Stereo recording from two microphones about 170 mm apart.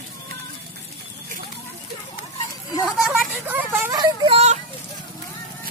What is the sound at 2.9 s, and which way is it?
Vehicle, 5° right (ahead or behind).